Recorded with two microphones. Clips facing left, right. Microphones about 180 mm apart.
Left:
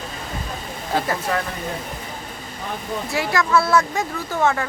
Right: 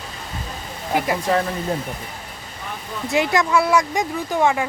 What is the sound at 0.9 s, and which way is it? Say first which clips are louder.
Speech: right 2 dB; 15° right (ahead or behind).